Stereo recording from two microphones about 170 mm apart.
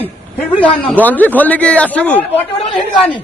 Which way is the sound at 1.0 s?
10° left (ahead or behind).